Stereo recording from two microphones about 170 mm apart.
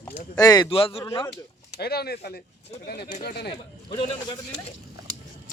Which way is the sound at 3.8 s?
30° left (ahead or behind).